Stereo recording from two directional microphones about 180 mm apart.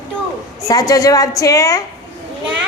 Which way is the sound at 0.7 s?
20° left (ahead or behind).